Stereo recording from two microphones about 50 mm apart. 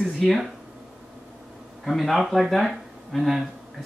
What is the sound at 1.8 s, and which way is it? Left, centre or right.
Speech, centre.